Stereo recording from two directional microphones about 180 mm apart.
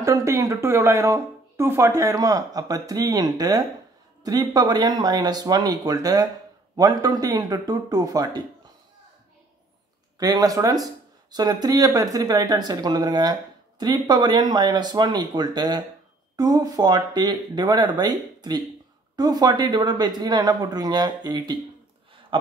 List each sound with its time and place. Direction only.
0.0 s speech: 15° right (ahead or behind)
10.1 s speech: 20° right (ahead or behind)
22.3 s a sound: 30° right (ahead or behind)